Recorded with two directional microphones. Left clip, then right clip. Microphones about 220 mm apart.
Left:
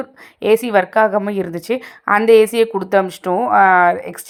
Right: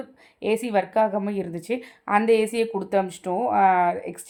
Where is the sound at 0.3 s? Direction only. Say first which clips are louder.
Left 9 dB; 25° left (ahead or behind).